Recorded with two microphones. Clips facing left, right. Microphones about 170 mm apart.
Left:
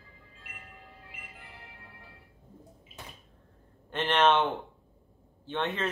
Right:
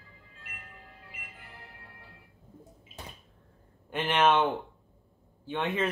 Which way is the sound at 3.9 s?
10° right (ahead or behind).